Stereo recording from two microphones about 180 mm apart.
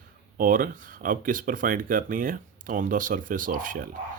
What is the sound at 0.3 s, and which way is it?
Speech, 50° right (ahead or behind).